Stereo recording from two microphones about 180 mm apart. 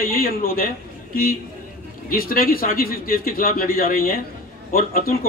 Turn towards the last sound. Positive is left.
turn(degrees=55)  # may be behind; listen again after turning